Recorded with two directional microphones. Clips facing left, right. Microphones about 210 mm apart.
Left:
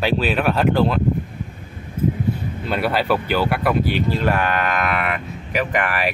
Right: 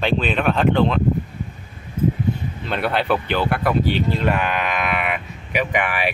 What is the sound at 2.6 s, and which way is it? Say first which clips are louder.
Speech: left 1 dB; 5° left (ahead or behind).